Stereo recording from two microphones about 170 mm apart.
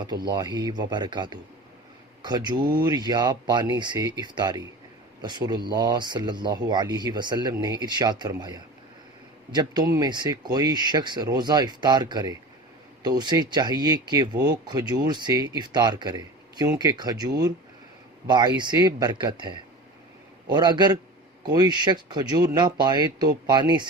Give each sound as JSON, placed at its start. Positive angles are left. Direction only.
{"t": 0.0, "sound": "speech", "side_deg": -25}